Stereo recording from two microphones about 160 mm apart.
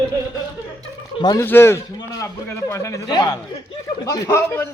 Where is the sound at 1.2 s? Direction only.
25° left (ahead or behind).